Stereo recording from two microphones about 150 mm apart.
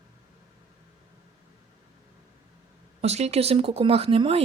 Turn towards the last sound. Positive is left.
turn(degrees=-40)  # may be behind; listen again after turning